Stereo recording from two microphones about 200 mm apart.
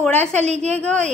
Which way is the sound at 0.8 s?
5° left (ahead or behind).